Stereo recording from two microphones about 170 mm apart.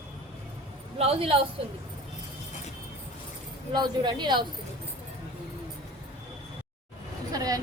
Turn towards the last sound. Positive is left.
turn(degrees=-20)  # may be behind; listen again after turning